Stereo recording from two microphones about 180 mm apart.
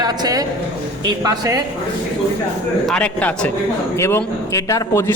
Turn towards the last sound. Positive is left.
turn(degrees=15)  # may be behind; listen again after turning